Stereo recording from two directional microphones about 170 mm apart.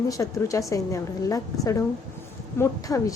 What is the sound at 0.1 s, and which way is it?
A woman's voice, 20° left (ahead or behind).